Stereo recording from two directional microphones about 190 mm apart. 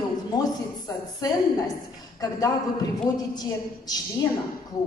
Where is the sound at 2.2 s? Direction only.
20° left (ahead or behind).